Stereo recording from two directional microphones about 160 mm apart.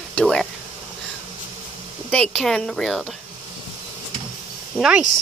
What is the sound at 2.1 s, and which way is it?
Speech, 5° left (ahead or behind).